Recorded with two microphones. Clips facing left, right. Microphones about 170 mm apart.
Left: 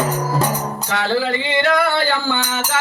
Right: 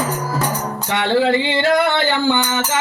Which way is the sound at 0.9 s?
25° right (ahead or behind).